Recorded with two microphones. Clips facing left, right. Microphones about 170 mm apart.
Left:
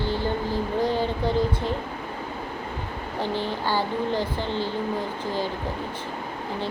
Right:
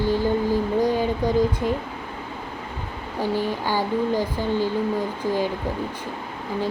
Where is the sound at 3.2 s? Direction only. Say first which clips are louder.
Right 3 dB; 10° right (ahead or behind).